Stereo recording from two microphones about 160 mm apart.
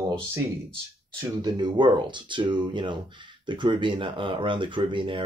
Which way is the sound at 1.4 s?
30° right (ahead or behind).